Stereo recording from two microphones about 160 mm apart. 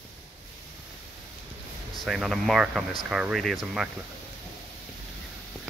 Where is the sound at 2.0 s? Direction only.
Centre (ahead or behind).